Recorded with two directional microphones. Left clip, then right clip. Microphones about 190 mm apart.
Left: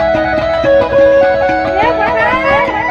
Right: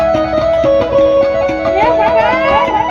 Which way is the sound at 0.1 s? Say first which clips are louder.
Even; 35° left (ahead or behind).